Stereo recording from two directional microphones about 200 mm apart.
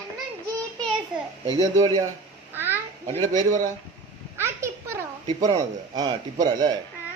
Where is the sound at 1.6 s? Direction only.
20° right (ahead or behind).